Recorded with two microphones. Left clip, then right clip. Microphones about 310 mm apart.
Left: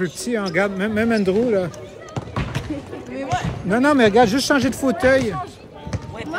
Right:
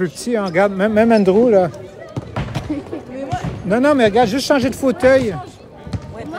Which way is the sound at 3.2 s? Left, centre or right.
Left.